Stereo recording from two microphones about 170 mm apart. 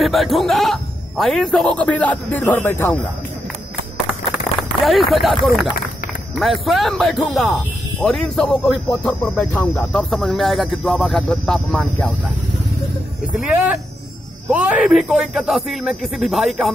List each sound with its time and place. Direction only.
0.0 s speech: centre (ahead or behind)
4.6 s speech: centre (ahead or behind)
14.5 s speech: 5° right (ahead or behind)